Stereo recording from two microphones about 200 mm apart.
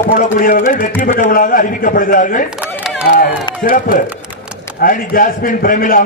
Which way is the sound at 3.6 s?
45° left (ahead or behind).